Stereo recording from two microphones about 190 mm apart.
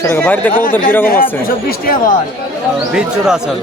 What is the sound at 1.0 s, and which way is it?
Speech, 50° left (ahead or behind).